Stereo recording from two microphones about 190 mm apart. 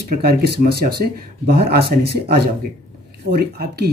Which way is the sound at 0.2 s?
55° right (ahead or behind).